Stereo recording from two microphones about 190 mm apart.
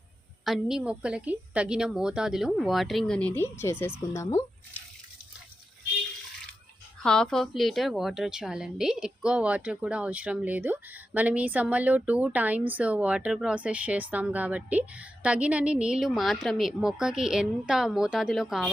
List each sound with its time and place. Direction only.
0.4 s a woman's voice: centre (ahead or behind); by 4.4 s 15° left (ahead or behind)
7.0 s a woman's voice: 5° left (ahead or behind)